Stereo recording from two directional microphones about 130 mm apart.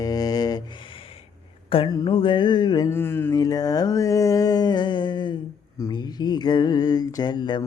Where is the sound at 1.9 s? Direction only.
35° left (ahead or behind).